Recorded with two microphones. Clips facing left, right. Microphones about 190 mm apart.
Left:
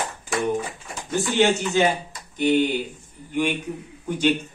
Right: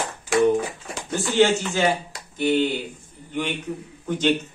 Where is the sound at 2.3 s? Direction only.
15° left (ahead or behind).